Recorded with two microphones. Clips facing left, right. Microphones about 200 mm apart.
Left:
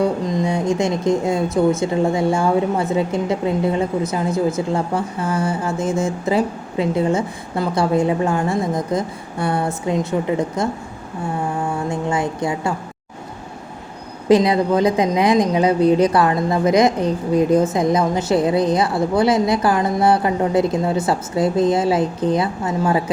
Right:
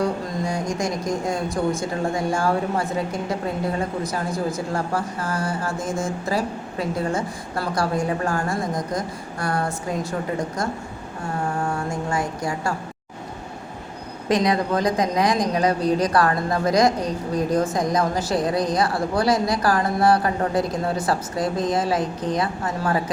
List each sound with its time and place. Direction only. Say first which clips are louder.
0.3 s a sound: left 6 dB; 20° left (ahead or behind)
0.7 s a woman's voice: left 7 dB; 25° left (ahead or behind)
11.9 s a woman's voice: left 4 dB; 20° left (ahead or behind)
14.3 s a woman's voice: left 6 dB; 25° left (ahead or behind)